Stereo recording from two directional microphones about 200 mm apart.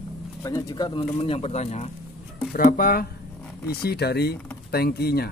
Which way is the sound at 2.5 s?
45° left (ahead or behind).